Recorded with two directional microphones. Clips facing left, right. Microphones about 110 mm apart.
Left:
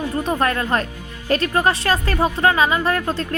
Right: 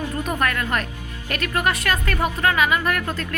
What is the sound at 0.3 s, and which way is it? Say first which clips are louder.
A woman's voice: left 4 dB; 30° left (ahead or behind).